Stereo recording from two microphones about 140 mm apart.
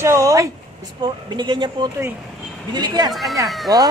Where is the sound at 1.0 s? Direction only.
35° right (ahead or behind).